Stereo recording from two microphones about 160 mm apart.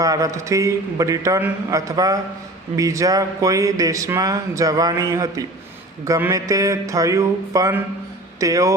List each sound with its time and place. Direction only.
0.0 s speech: 20° right (ahead or behind)